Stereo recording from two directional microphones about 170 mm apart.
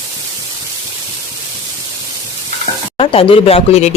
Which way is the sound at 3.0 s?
30° left (ahead or behind).